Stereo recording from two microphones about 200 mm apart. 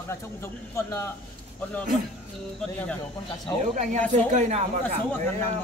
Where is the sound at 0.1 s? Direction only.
15° left (ahead or behind).